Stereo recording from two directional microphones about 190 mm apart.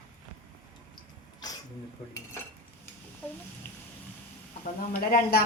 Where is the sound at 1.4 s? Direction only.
20° left (ahead or behind).